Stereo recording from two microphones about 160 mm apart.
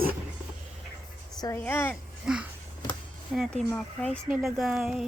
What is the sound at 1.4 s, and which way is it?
Speech, 20° left (ahead or behind).